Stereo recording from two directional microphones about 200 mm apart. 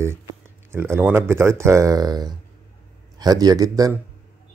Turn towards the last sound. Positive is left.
turn(degrees=-20)  # may be behind; listen again after turning